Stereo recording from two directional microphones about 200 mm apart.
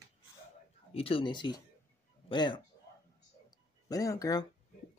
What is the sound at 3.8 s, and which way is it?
Speech, 15° left (ahead or behind).